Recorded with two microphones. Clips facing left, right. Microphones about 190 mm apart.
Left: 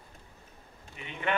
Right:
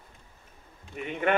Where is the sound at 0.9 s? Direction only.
50° right (ahead or behind).